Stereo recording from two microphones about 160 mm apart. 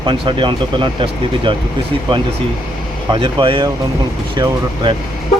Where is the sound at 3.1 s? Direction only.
30° right (ahead or behind).